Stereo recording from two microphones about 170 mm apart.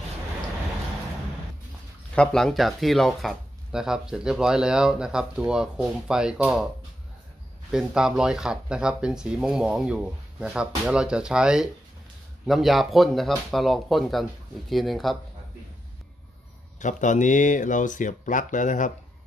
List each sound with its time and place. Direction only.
2.1 s speech: centre (ahead or behind)
7.7 s speech: 5° right (ahead or behind)
16.8 s speech: 45° left (ahead or behind)